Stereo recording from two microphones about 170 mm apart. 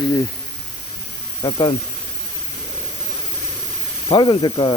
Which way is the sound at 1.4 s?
25° left (ahead or behind).